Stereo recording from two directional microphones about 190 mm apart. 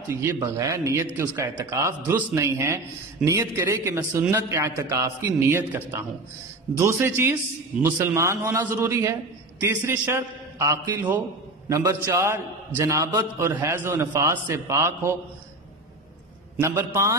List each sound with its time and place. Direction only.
0.1 s a man's voice: 15° right (ahead or behind)
16.5 s a man's voice: 15° right (ahead or behind)